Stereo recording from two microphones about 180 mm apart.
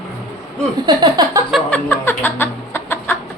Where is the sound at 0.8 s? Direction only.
25° right (ahead or behind).